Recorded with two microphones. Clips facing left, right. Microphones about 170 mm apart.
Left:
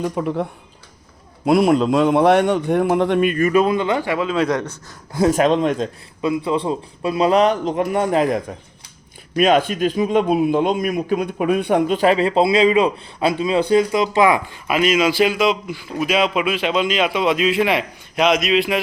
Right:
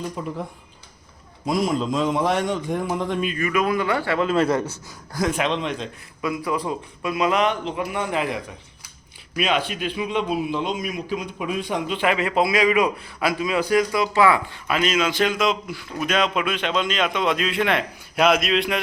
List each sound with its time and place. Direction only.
0.0 s a man's voice: 65° left (ahead or behind)
1.5 s a man's voice: 65° left (ahead or behind)
3.5 s speech: 25° left (ahead or behind)
4.2 s a man's voice: centre (ahead or behind)
5.3 s a man's voice: 45° left (ahead or behind)
6.2 s a man's voice: 25° left (ahead or behind); by 11.9 s 55° left (ahead or behind)
11.9 s a man's voice: 35° left (ahead or behind); by 18.8 s 5° left (ahead or behind)